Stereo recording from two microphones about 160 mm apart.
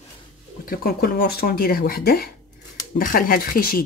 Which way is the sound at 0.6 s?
70° left (ahead or behind).